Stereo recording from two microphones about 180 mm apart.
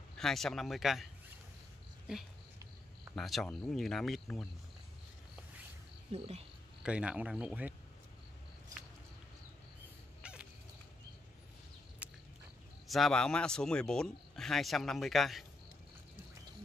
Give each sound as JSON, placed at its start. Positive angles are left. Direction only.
{"t": 0.2, "sound": "speech", "side_deg": 0}
{"t": 2.1, "sound": "speech", "side_deg": -5}
{"t": 6.1, "sound": "speech", "side_deg": -35}
{"t": 6.8, "sound": "speech", "side_deg": -5}
{"t": 10.2, "sound": "a sound", "side_deg": -5}
{"t": 12.0, "sound": "a sound", "side_deg": -10}
{"t": 12.8, "sound": "speech", "side_deg": 0}